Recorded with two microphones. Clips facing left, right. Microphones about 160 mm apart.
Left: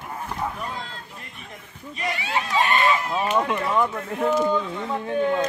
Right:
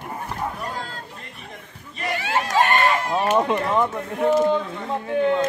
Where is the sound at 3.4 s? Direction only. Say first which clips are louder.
Right 2 dB; 30° right (ahead or behind).